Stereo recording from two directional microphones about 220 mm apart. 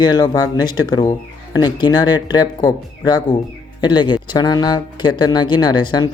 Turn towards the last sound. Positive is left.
turn(degrees=20)  # may be behind; listen again after turning